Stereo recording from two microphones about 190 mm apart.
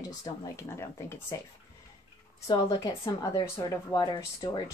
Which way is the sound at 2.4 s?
25° left (ahead or behind).